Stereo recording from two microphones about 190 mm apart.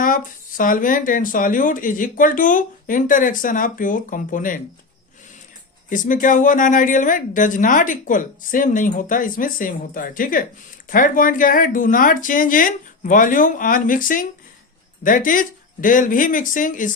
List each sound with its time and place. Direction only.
0.0 s speech: 45° left (ahead or behind)
5.9 s speech: 45° left (ahead or behind)